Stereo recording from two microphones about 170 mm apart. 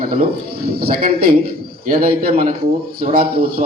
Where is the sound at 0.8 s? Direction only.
60° right (ahead or behind).